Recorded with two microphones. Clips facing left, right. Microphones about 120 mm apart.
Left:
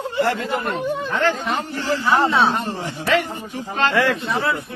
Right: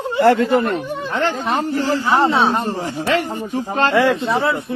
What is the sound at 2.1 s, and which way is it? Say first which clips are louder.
Speech: right 1 dB; 25° right (ahead or behind).